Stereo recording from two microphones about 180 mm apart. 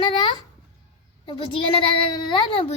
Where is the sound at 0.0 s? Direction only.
25° left (ahead or behind).